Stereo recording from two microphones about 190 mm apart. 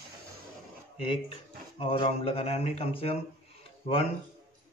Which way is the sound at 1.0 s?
30° left (ahead or behind).